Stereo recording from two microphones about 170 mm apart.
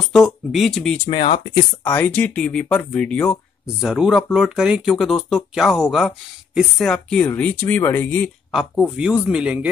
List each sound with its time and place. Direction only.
0.0 s speech: centre (ahead or behind)
1.2 s speech: 30° left (ahead or behind)
1.9 s speech: 10° left (ahead or behind)
8.5 s speech: centre (ahead or behind)